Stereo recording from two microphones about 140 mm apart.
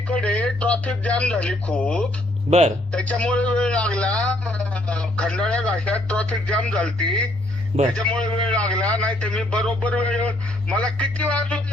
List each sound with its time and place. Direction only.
0.1 s speech: 10° left (ahead or behind)
2.5 s speech: 50° right (ahead or behind)
2.9 s a man's voice: 10° left (ahead or behind)